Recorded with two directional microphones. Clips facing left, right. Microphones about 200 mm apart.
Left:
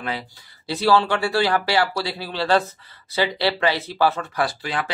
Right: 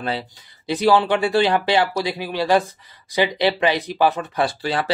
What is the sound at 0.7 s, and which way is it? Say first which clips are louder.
Speech: right 2 dB; 15° right (ahead or behind).